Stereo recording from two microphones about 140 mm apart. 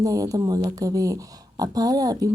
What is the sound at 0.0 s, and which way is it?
A woman's voice, 25° right (ahead or behind).